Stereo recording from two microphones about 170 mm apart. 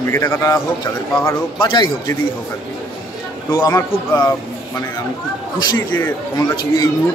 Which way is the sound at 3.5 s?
20° left (ahead or behind).